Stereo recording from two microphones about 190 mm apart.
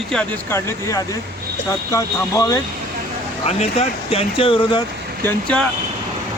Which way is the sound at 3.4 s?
35° left (ahead or behind).